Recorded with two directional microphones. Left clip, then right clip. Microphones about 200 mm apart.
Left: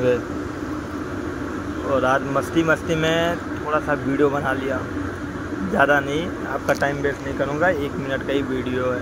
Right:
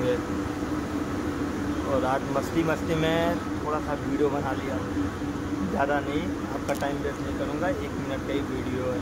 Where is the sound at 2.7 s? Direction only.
10° left (ahead or behind).